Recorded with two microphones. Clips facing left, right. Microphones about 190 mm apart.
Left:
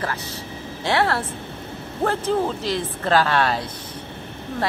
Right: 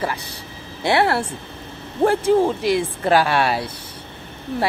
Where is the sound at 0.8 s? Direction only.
15° right (ahead or behind).